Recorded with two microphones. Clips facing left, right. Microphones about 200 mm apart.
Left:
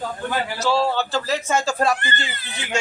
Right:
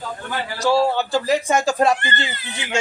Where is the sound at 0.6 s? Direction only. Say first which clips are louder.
Right 4 dB; 15° right (ahead or behind).